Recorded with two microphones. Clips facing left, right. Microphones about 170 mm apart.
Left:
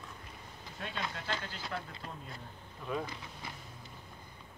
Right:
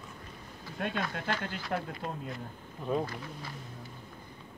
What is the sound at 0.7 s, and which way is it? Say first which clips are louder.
Speech: right 6 dB; 60° right (ahead or behind).